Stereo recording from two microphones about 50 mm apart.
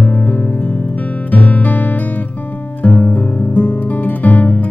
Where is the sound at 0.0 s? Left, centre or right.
Left.